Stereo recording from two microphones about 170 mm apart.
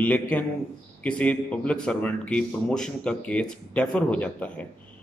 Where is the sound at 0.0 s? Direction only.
10° left (ahead or behind).